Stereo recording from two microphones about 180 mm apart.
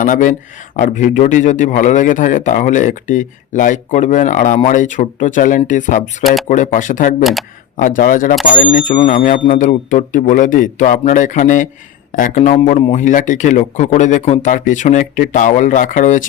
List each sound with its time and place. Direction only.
0.0 s speech: 45° left (ahead or behind)